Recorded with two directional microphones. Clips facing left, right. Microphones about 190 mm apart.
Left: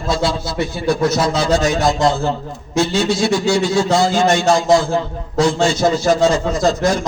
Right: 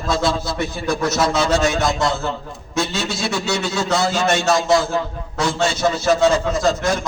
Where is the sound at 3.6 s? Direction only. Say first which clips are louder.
Left 5 dB; 35° left (ahead or behind).